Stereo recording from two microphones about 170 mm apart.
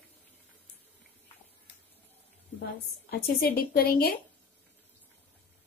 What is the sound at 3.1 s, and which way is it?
A woman's voice, 65° left (ahead or behind).